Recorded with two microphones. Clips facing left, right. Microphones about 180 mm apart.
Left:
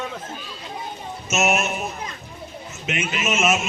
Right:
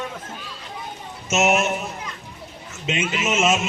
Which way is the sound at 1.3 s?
25° right (ahead or behind).